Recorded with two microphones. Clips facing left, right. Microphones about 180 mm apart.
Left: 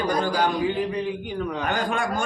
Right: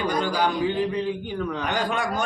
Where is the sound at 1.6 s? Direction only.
50° left (ahead or behind).